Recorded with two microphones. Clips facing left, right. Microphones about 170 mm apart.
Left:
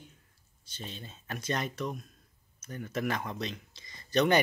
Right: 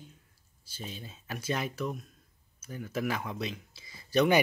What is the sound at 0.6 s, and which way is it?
Speech, 5° right (ahead or behind).